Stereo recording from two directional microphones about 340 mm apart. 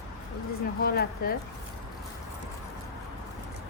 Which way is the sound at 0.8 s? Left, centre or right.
Left.